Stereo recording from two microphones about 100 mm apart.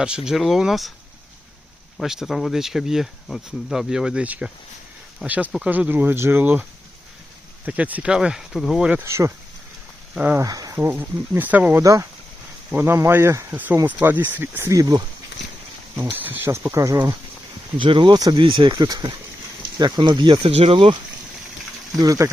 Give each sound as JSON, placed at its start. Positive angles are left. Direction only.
{"t": 0.3, "sound": "speech", "side_deg": 0}
{"t": 2.0, "sound": "speech", "side_deg": -5}
{"t": 9.0, "sound": "speech", "side_deg": -30}
{"t": 10.3, "sound": "speech", "side_deg": -35}
{"t": 10.8, "sound": "speech", "side_deg": -20}
{"t": 11.8, "sound": "speech", "side_deg": -35}
{"t": 14.7, "sound": "speech", "side_deg": -40}
{"t": 16.1, "sound": "speech", "side_deg": -20}
{"t": 17.7, "sound": "speech", "side_deg": -55}
{"t": 18.8, "sound": "speech", "side_deg": -40}
{"t": 19.8, "sound": "speech", "side_deg": -50}
{"t": 20.6, "sound": "speech", "side_deg": -70}
{"t": 22.0, "sound": "speech", "side_deg": -35}